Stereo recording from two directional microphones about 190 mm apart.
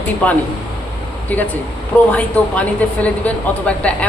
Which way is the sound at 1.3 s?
10° left (ahead or behind).